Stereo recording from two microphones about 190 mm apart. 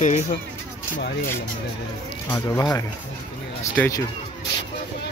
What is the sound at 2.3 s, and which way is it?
Speech, 15° left (ahead or behind).